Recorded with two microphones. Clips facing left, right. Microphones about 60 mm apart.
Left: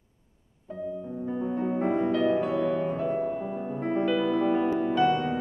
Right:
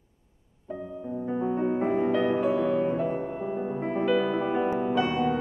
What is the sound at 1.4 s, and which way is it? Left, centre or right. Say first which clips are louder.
Music: right 1 dB; centre.